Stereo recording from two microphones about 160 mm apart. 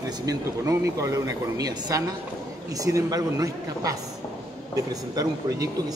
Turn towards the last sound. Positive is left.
turn(degrees=-20)  # may be behind; listen again after turning